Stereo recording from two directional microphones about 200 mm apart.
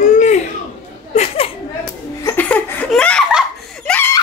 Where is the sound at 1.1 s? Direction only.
30° left (ahead or behind).